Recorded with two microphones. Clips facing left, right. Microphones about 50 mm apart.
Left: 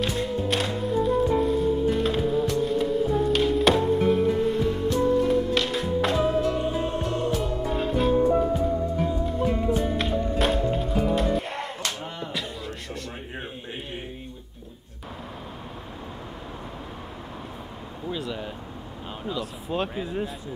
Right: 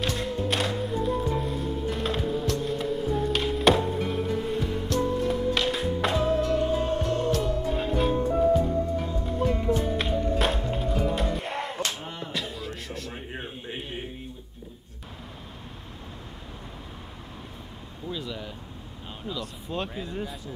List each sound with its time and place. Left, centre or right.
0.0 s music: centre
7.3 s music: centre
8.2 s music: centre
10.7 s music: centre
12.0 s a sound: centre
18.1 s a sound: centre